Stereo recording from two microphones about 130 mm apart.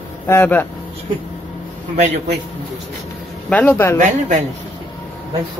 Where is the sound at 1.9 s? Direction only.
65° right (ahead or behind).